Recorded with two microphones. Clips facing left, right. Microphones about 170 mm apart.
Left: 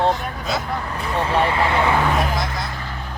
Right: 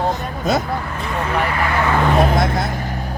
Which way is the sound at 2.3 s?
55° right (ahead or behind).